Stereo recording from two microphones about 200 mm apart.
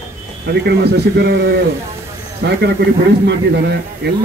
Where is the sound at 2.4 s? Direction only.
65° right (ahead or behind).